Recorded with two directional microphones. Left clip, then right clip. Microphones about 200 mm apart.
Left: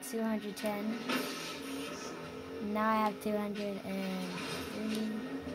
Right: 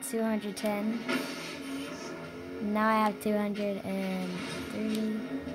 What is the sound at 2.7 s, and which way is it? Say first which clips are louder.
A woman's voice: right 4 dB; 20° right (ahead or behind).